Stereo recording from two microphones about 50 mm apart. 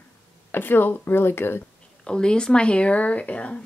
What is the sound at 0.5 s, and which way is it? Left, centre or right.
Speech, left.